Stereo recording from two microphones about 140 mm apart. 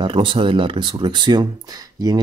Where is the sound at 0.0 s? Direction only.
35° right (ahead or behind).